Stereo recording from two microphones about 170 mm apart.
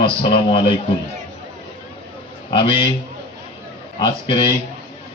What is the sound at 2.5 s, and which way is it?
Speech, 30° left (ahead or behind).